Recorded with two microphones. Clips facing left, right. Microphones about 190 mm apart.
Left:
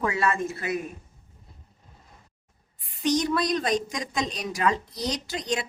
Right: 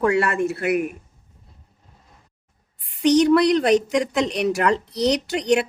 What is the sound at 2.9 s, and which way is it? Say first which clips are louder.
A woman's voice: right 9 dB; 70° right (ahead or behind).